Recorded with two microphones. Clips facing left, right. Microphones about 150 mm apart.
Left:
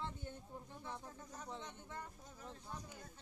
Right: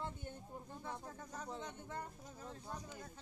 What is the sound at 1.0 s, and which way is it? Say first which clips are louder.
Speech: right 3 dB; 40° right (ahead or behind).